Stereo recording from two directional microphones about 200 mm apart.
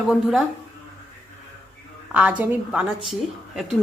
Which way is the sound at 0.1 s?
Centre (ahead or behind).